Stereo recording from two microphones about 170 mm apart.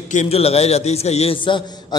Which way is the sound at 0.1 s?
40° left (ahead or behind).